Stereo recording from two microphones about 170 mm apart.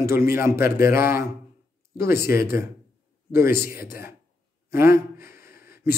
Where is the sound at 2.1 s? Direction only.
15° right (ahead or behind).